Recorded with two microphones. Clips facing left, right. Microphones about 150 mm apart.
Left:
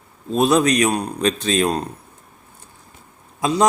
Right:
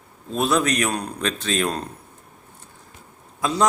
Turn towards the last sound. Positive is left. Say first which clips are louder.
# left 3 dB
turn(degrees=15)  # may be behind; listen again after turning